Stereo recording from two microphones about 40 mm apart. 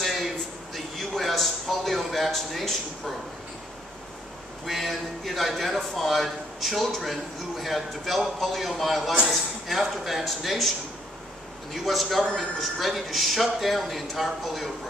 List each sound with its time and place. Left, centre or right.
0.0 s a sound: centre
4.6 s a man's voice: centre
11.7 s a man's voice: centre